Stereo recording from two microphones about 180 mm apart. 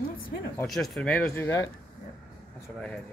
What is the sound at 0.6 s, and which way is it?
Speech, centre (ahead or behind).